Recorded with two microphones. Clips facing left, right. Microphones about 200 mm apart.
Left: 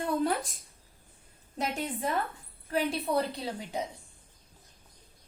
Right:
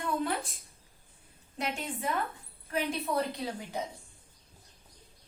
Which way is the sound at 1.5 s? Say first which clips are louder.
Left 3 dB; 40° left (ahead or behind).